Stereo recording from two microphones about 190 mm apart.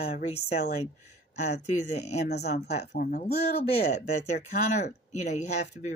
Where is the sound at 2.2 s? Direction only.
60° left (ahead or behind).